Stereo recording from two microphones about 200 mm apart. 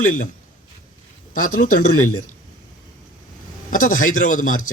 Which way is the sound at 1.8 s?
90° left.